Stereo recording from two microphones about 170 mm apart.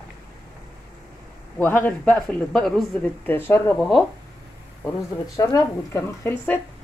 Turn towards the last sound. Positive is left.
turn(degrees=20)  # may be behind; listen again after turning